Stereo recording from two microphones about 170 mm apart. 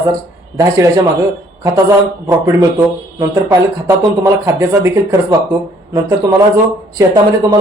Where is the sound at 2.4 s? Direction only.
15° right (ahead or behind).